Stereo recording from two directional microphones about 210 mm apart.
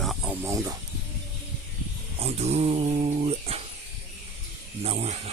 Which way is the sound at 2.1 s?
30° right (ahead or behind).